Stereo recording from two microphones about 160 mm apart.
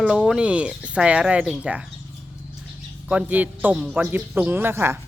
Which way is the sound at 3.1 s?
10° right (ahead or behind).